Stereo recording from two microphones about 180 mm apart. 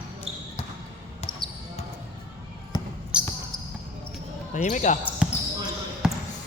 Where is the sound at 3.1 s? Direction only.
5° right (ahead or behind).